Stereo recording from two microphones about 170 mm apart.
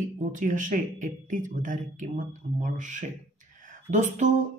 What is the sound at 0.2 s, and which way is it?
Speech, 50° right (ahead or behind).